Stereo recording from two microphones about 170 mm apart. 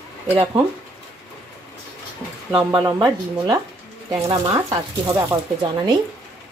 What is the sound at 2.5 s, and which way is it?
Speech, 15° right (ahead or behind).